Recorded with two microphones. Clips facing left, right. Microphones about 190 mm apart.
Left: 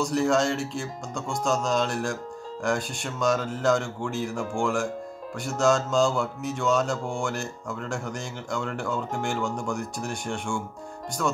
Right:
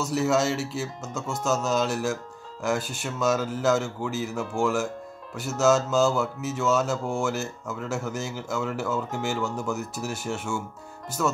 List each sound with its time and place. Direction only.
0.0 s speech: 5° right (ahead or behind)